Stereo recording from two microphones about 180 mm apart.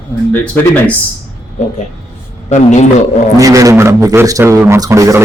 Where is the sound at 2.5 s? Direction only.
40° left (ahead or behind).